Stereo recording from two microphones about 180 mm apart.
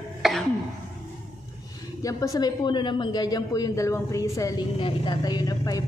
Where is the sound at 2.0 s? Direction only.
20° left (ahead or behind).